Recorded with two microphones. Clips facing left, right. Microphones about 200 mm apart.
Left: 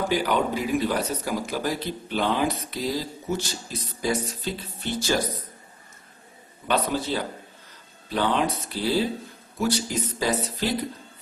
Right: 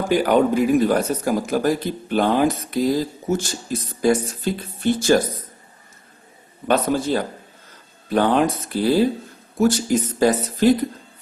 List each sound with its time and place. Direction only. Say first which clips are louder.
0.1 s speech: right 7 dB; 50° right (ahead or behind)
6.7 s speech: right 6 dB; 50° right (ahead or behind)